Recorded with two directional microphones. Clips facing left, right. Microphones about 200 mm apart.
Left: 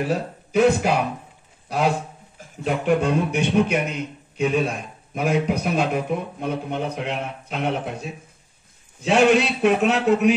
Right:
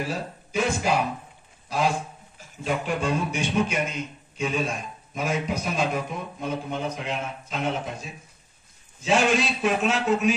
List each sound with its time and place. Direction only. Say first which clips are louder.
0.1 s a man's voice: left 7 dB; 65° left (ahead or behind)